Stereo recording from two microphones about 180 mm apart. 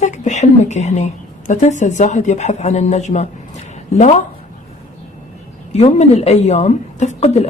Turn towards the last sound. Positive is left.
turn(degrees=40)  # may be behind; listen again after turning